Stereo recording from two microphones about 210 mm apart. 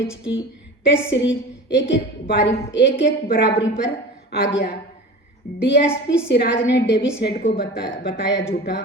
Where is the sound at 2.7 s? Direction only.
55° left (ahead or behind).